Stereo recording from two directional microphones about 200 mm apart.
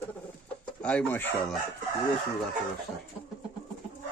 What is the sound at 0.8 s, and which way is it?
Speech, 5° left (ahead or behind).